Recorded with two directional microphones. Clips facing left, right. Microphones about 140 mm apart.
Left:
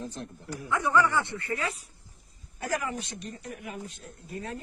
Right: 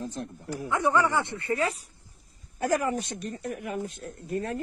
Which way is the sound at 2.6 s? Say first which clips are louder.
Right 6 dB; 45° right (ahead or behind).